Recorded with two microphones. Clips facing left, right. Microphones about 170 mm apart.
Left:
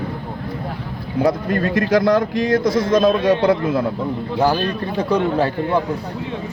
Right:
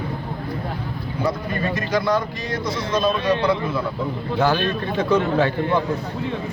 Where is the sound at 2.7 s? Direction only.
50° left (ahead or behind).